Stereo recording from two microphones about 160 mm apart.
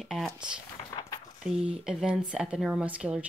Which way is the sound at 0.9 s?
25° left (ahead or behind).